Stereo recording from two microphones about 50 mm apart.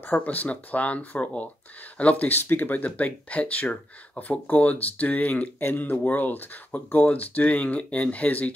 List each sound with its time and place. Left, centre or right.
0.1 s speech: left